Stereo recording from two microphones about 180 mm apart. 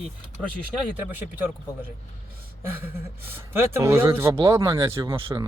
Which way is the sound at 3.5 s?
15° right (ahead or behind).